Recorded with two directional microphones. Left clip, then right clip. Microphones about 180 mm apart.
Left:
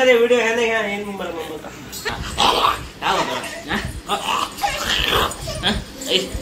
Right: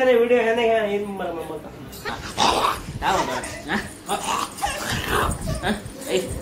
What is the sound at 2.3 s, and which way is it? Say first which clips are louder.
Dog: left 3 dB; 10° right (ahead or behind).